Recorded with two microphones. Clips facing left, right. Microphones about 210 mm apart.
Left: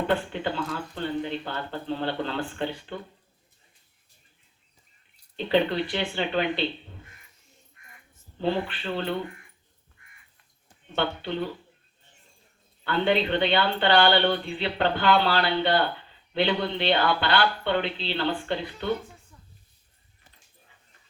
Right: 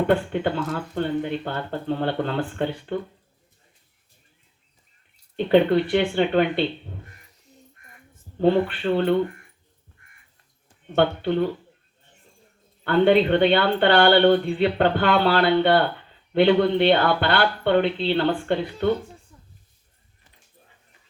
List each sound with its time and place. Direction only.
0.1 s speech: 50° right (ahead or behind)
5.5 s speech: 55° right (ahead or behind)
7.0 s music: 40° right (ahead or behind)
8.1 s speech: 50° right (ahead or behind)
10.9 s speech: 50° right (ahead or behind)
12.8 s speech: 55° right (ahead or behind)